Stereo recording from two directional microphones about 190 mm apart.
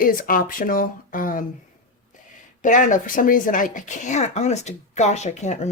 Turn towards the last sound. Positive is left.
turn(degrees=35)  # may be behind; listen again after turning